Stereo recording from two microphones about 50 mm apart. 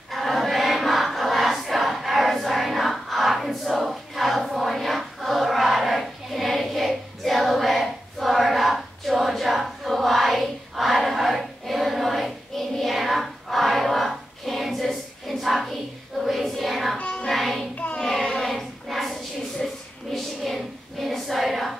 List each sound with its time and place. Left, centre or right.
0.1 s choir: centre
16.2 s child singing: centre
17.0 s music: left
17.3 s music: centre
18.4 s a sound: centre
20.4 s child singing: centre